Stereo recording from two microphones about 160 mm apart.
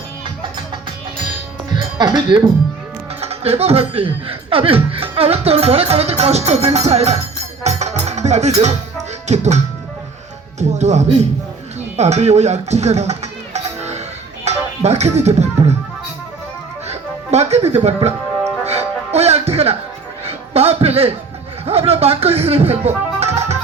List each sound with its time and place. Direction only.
1.7 s music: 30° right (ahead or behind)
3.2 s speech: 40° right (ahead or behind)
7.6 s music: 45° right (ahead or behind)
9.2 s speech: 45° right (ahead or behind)
10.6 s speech: 45° right (ahead or behind)
14.4 s music: 45° right (ahead or behind)
16.9 s speech: 40° right (ahead or behind)
18.6 s music: 40° right (ahead or behind)
20.2 s a sound: 40° right (ahead or behind)
21.7 s speech: 40° right (ahead or behind)